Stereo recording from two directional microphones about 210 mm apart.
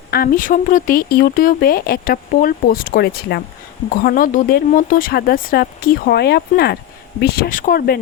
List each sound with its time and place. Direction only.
0.1 s speech: 45° left (ahead or behind)